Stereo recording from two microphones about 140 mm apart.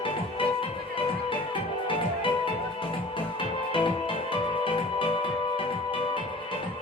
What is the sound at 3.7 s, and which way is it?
Music, 40° left (ahead or behind).